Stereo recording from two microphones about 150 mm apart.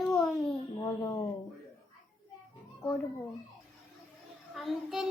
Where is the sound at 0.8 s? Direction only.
20° left (ahead or behind).